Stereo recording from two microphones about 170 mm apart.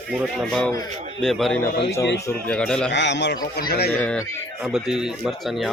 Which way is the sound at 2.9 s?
90° left.